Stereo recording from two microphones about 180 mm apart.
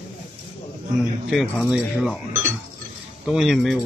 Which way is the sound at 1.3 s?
Centre (ahead or behind).